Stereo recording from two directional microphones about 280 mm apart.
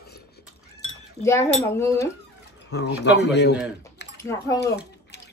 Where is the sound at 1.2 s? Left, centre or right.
Centre.